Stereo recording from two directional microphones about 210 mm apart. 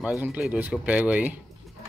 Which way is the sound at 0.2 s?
5° right (ahead or behind).